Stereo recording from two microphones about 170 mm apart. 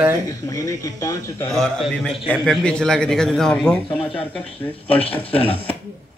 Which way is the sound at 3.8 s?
35° left (ahead or behind).